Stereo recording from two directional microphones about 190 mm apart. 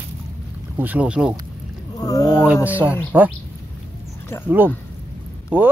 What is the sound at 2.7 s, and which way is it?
Speech, 10° right (ahead or behind).